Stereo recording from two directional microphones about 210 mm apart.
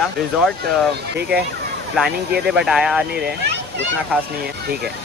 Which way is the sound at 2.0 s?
Centre (ahead or behind).